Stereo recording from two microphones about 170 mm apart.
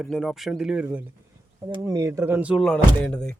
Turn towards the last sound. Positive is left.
turn(degrees=5)  # may be behind; listen again after turning